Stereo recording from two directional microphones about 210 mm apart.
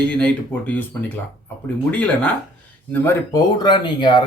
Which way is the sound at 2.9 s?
10° left (ahead or behind).